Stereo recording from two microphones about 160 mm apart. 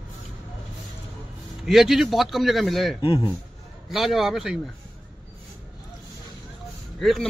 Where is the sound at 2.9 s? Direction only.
30° left (ahead or behind).